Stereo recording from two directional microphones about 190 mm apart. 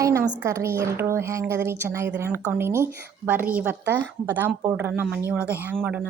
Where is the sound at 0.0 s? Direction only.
15° right (ahead or behind).